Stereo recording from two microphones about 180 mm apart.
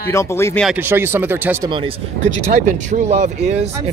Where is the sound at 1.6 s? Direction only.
25° right (ahead or behind).